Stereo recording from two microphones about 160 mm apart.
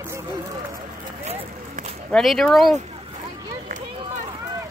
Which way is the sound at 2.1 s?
5° left (ahead or behind).